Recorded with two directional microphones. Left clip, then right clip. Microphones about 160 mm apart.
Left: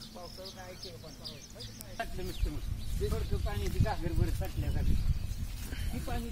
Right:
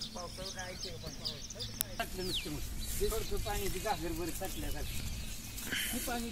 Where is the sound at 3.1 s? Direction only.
10° right (ahead or behind).